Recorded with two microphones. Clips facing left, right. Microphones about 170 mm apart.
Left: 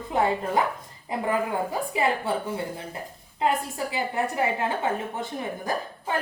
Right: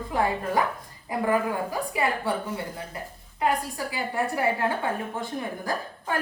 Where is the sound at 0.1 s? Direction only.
25° left (ahead or behind).